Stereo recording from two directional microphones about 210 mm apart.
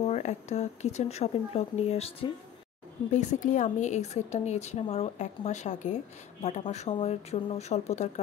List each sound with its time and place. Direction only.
0.0 s a woman's voice: 30° left (ahead or behind)